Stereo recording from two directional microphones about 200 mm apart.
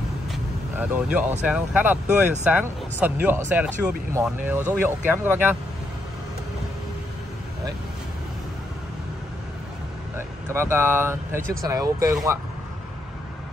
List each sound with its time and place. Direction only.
0.3 s vehicle: 5° right (ahead or behind)
1.4 s speech: 5° right (ahead or behind)
10.1 s speech: 10° right (ahead or behind)